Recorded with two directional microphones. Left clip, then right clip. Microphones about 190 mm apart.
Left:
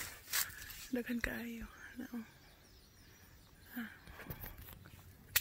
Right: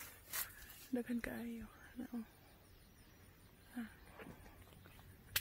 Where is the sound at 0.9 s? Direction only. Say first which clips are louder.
Left 4 dB; 10° left (ahead or behind).